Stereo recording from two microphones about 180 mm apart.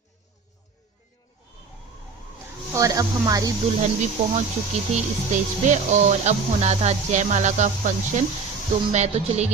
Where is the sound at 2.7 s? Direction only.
20° right (ahead or behind).